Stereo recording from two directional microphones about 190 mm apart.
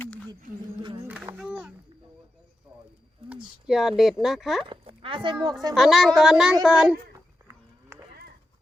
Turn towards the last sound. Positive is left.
turn(degrees=-15)  # may be behind; listen again after turning